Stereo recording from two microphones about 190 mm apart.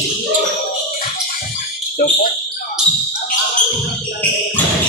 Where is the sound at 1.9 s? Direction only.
45° left (ahead or behind).